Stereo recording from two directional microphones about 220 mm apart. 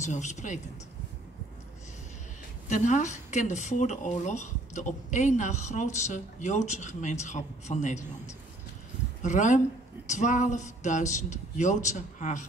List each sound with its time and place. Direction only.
0.0 s speech: 30° left (ahead or behind)
2.7 s speech: 35° left (ahead or behind)
9.2 s speech: 35° left (ahead or behind)